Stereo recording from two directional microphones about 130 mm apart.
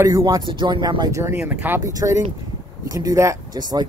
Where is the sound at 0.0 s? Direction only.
25° right (ahead or behind).